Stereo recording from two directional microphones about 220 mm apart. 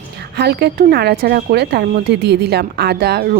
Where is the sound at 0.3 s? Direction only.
45° right (ahead or behind).